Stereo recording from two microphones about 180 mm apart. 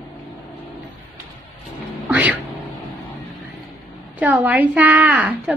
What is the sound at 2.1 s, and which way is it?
Speech, 10° right (ahead or behind).